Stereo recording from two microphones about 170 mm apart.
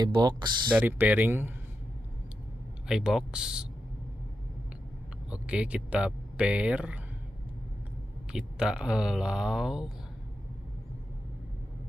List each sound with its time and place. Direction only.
0.0 s speech: 25° right (ahead or behind)
0.7 s speech: 10° right (ahead or behind)
2.9 s speech: 5° right (ahead or behind)
5.3 s speech: 5° right (ahead or behind)
8.3 s speech: 5° right (ahead or behind)